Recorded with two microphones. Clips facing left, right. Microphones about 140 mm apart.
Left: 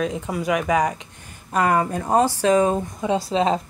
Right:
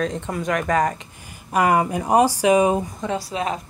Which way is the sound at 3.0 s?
25° left (ahead or behind).